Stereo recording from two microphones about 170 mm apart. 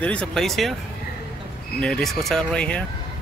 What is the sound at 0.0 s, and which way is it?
Speech, 5° left (ahead or behind).